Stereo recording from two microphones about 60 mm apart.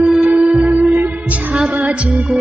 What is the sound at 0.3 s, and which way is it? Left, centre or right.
Music, centre.